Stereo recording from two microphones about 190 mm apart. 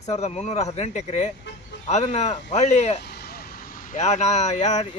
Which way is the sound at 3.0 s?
60° left (ahead or behind).